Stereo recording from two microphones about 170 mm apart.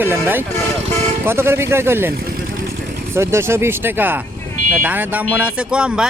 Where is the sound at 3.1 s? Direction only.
15° right (ahead or behind).